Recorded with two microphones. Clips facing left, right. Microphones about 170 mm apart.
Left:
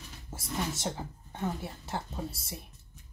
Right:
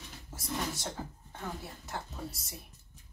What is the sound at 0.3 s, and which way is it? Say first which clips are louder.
A woman's voice: left 2 dB; 25° left (ahead or behind).